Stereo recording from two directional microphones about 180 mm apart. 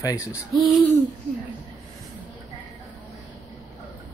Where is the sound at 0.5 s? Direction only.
Centre (ahead or behind).